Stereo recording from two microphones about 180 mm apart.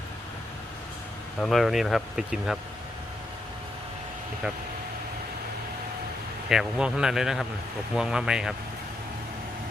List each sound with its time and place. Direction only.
1.4 s speech: centre (ahead or behind)
6.5 s speech: 5° right (ahead or behind)